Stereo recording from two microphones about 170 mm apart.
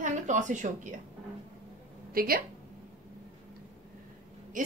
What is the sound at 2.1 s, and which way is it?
Speech, 60° right (ahead or behind).